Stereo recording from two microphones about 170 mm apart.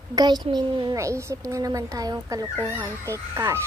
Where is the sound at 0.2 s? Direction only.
25° right (ahead or behind).